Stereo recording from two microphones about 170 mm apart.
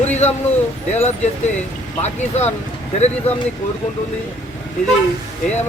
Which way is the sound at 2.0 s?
40° left (ahead or behind).